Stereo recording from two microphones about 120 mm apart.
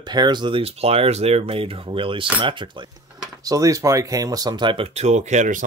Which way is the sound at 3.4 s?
30° right (ahead or behind).